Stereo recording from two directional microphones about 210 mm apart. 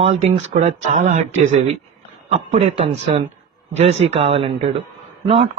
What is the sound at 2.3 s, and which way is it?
A man's voice, 30° right (ahead or behind).